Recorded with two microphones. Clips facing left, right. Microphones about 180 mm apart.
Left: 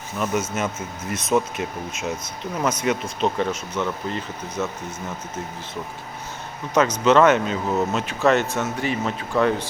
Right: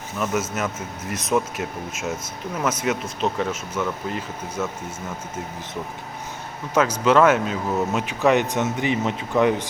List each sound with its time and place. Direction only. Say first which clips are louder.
0.2 s speech: left 1 dB; centre (ahead or behind)
6.7 s speech: left 1 dB; 5° right (ahead or behind)
8.0 s speech: right 2 dB; 15° right (ahead or behind)